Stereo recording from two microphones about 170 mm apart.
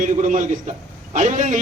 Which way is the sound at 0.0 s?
50° right (ahead or behind).